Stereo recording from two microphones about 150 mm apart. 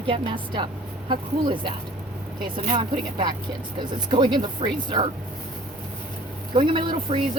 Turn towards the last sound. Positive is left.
turn(degrees=-35)  # may be behind; listen again after turning